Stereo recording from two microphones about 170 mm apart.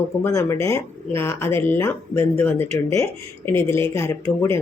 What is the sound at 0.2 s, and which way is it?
Speech, 20° left (ahead or behind).